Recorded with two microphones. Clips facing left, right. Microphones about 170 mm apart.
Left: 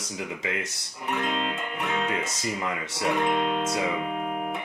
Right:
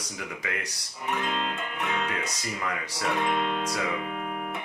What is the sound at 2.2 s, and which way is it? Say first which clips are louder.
Speech: left 3 dB; 25° left (ahead or behind).